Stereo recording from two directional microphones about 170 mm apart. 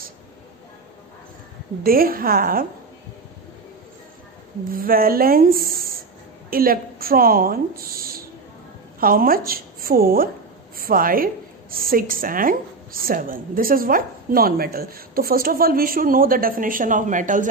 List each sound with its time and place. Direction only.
1.8 s a woman's voice: 60° right (ahead or behind)
4.6 s a woman's voice: 60° right (ahead or behind)